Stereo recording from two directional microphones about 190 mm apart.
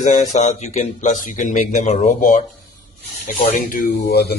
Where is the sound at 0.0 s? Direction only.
40° left (ahead or behind).